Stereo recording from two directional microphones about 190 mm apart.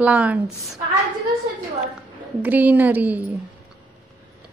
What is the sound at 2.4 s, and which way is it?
Speech, 10° right (ahead or behind).